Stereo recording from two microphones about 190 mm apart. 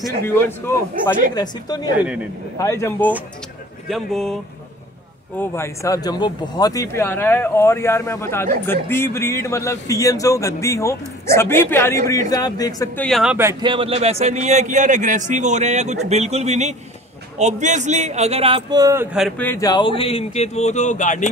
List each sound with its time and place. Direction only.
1.3 s a man's voice: 20° left (ahead or behind)
3.9 s speech: centre (ahead or behind)
5.4 s a man's voice: 15° left (ahead or behind)
13.0 s speech: centre (ahead or behind)
13.4 s a man's voice: 20° right (ahead or behind)
19.1 s speech: centre (ahead or behind)
19.4 s speech: 15° left (ahead or behind); by 21.3 s 40° left (ahead or behind)